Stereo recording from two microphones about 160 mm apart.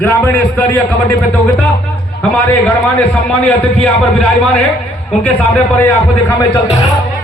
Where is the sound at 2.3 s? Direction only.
10° left (ahead or behind).